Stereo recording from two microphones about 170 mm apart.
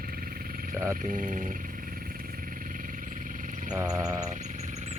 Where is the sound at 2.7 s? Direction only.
50° right (ahead or behind).